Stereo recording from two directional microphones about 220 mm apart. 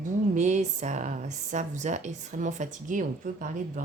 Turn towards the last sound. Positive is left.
turn(degrees=-35)  # may be behind; listen again after turning